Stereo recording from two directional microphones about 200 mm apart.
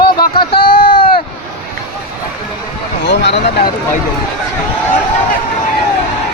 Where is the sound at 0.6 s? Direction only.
45° left (ahead or behind).